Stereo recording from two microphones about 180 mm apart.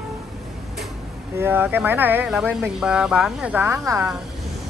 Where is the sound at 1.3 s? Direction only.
10° right (ahead or behind).